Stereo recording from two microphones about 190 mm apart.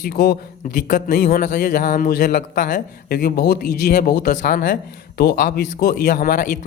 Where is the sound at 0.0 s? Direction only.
55° left (ahead or behind).